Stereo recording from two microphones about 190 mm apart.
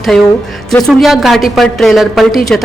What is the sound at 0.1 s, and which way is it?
A woman's voice, 5° left (ahead or behind).